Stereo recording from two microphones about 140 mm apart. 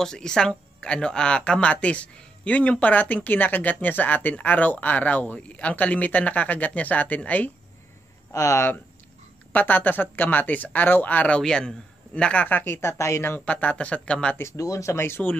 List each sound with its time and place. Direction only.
0.0 s speech: 5° left (ahead or behind)
8.3 s speech: 20° left (ahead or behind)
14.4 s speech: 20° left (ahead or behind)